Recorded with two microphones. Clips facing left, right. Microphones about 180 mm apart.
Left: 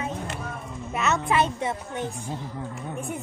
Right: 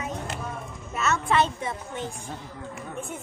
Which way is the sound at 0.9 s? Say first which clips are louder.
Even; 15° left (ahead or behind).